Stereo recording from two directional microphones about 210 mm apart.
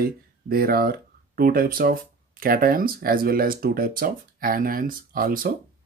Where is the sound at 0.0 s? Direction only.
45° right (ahead or behind).